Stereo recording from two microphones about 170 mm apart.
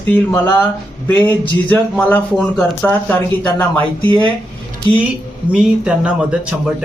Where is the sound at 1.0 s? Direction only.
10° left (ahead or behind).